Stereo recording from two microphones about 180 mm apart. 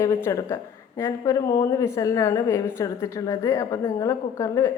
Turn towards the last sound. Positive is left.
turn(degrees=15)  # may be behind; listen again after turning